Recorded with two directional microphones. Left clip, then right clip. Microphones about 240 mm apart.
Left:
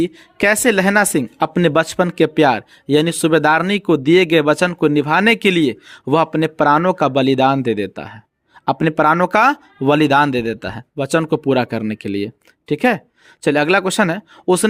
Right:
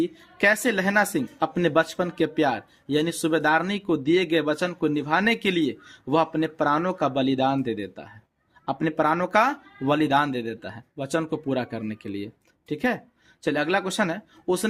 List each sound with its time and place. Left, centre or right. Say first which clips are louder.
0.0 s speech: left 5 dB; left